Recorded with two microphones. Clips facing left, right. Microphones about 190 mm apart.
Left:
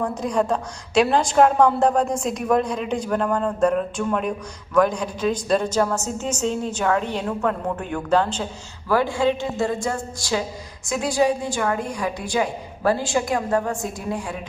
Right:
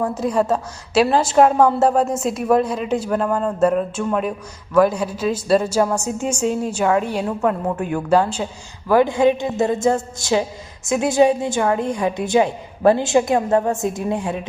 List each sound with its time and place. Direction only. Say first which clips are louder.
0.0 s a woman's voice: right 3 dB; 5° right (ahead or behind); by 14.3 s 25° right (ahead or behind)